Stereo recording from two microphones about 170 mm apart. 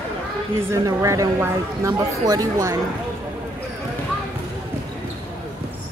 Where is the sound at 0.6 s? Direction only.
15° right (ahead or behind).